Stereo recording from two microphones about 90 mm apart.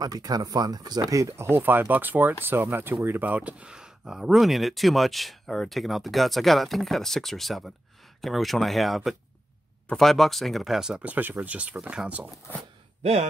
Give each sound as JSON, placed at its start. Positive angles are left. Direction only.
{"t": 0.0, "sound": "speech", "side_deg": -45}